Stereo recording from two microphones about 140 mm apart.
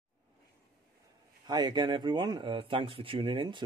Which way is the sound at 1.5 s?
30° right (ahead or behind).